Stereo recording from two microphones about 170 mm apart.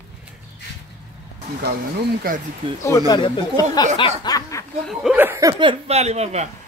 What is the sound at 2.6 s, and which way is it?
Speech, 30° right (ahead or behind).